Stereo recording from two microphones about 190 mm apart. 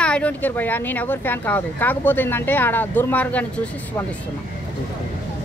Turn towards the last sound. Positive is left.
turn(degrees=5)  # may be behind; listen again after turning